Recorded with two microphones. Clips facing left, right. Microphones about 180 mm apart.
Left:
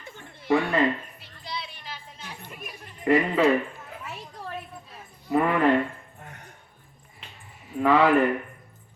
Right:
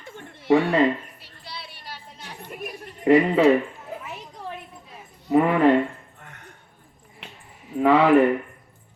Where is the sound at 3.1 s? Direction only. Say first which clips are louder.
Right 5 dB; 20° right (ahead or behind).